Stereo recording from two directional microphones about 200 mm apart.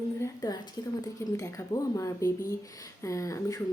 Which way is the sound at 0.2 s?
20° left (ahead or behind).